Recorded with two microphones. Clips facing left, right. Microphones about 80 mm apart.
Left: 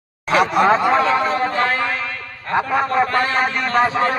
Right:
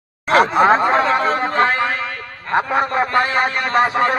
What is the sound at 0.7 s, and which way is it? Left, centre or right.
Speech, right.